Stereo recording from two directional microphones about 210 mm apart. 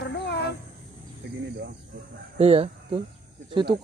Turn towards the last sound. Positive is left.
turn(degrees=-25)  # may be behind; listen again after turning